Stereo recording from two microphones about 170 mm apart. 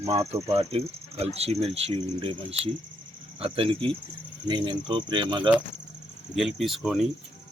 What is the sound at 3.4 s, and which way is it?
Speech, 35° right (ahead or behind).